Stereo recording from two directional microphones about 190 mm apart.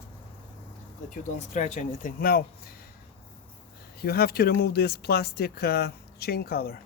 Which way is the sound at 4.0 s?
55° left (ahead or behind).